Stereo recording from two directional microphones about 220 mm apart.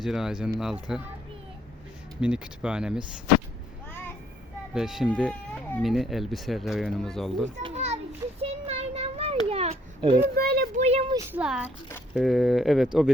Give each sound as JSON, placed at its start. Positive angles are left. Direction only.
{"t": 0.0, "sound": "speech", "side_deg": 0}
{"t": 2.2, "sound": "speech", "side_deg": -5}
{"t": 4.7, "sound": "speech", "side_deg": 0}
{"t": 7.6, "sound": "children playing", "side_deg": -30}
{"t": 8.4, "sound": "a sound", "side_deg": -30}
{"t": 10.3, "sound": "speech", "side_deg": -45}
{"t": 10.8, "sound": "speech", "side_deg": -25}
{"t": 11.3, "sound": "speech", "side_deg": -5}